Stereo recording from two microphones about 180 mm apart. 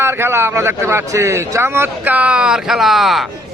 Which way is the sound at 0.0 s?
15° right (ahead or behind).